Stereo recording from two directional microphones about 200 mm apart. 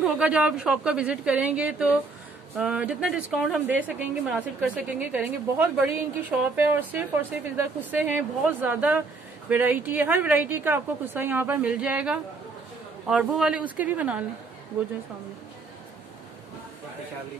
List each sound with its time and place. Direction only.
0.0 s a woman's voice: 5° right (ahead or behind)